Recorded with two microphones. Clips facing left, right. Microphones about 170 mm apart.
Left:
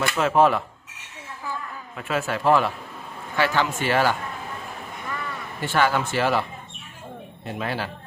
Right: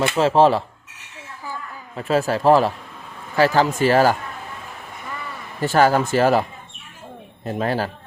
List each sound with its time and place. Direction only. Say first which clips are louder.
0.0 s speech: right 4 dB; 25° right (ahead or behind)
2.0 s speech: right 6 dB; 35° right (ahead or behind)
5.5 s speech: right 6 dB; 40° right (ahead or behind)
7.4 s speech: right 6 dB; 40° right (ahead or behind)